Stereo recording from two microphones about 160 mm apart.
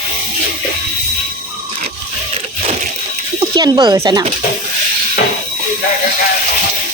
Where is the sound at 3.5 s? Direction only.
25° right (ahead or behind).